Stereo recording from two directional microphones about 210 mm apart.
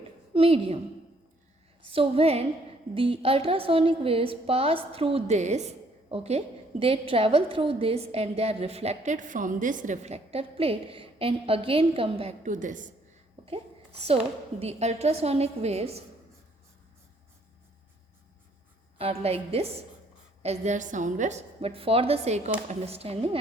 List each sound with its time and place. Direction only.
0.3 s a woman's voice: 30° right (ahead or behind)
1.9 s a woman's voice: 25° right (ahead or behind)
14.6 s a woman's voice: 30° right (ahead or behind)
18.9 s a woman's voice: 30° right (ahead or behind)